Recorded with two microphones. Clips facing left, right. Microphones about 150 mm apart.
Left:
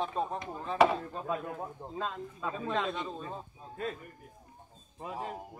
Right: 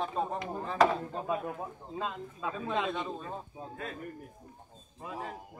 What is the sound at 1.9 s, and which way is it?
Speech, 10° right (ahead or behind).